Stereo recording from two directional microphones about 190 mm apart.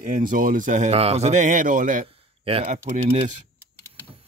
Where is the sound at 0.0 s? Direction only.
45° right (ahead or behind).